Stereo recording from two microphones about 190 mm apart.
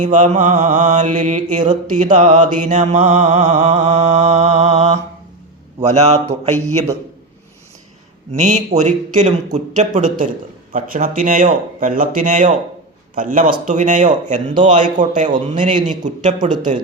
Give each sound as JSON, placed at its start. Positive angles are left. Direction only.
{"t": 0.0, "sound": "mantra", "side_deg": -40}
{"t": 8.3, "sound": "mantra", "side_deg": -40}
{"t": 10.7, "sound": "speech", "side_deg": -45}
{"t": 13.1, "sound": "mantra", "side_deg": -45}